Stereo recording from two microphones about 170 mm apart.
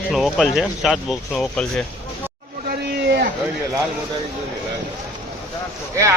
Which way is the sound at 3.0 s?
60° right (ahead or behind).